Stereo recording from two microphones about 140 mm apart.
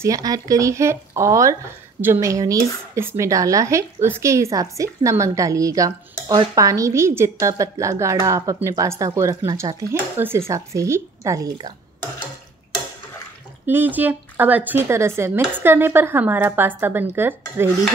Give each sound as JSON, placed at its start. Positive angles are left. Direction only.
{"t": 0.0, "sound": "speech", "side_deg": -25}
{"t": 11.5, "sound": "a sound", "side_deg": -30}
{"t": 13.7, "sound": "speech", "side_deg": -15}